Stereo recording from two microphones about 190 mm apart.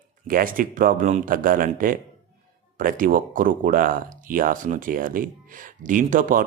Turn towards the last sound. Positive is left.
turn(degrees=-45)  # may be behind; listen again after turning